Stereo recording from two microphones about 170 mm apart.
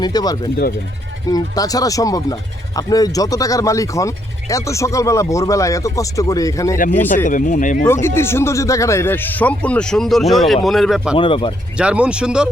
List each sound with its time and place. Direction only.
0.0 s speech: 25° left (ahead or behind)
7.3 s speech: 50° left (ahead or behind)
8.0 s speech: 15° left (ahead or behind); by 11.2 s 5° right (ahead or behind)
11.2 s speech: 30° left (ahead or behind)
11.8 s speech: 5° right (ahead or behind)